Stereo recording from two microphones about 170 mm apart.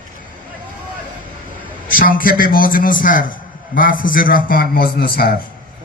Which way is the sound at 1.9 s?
55° left (ahead or behind).